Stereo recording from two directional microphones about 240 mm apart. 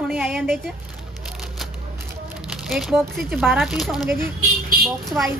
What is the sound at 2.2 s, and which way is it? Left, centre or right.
Speech, centre.